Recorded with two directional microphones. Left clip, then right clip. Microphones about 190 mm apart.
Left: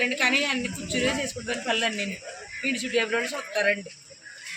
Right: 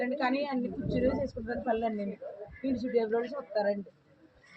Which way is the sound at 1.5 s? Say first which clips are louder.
Left 6 dB; 35° left (ahead or behind).